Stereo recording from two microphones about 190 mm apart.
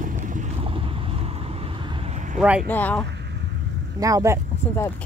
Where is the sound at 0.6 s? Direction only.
30° right (ahead or behind).